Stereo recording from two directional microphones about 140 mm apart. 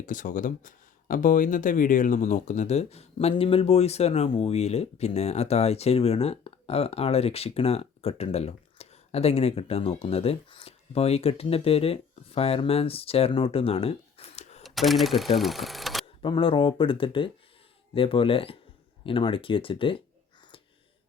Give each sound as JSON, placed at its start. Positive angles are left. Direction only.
{"t": 0.0, "sound": "speech", "side_deg": 70}
{"t": 14.6, "sound": "speech", "side_deg": 0}
{"t": 16.2, "sound": "speech", "side_deg": 35}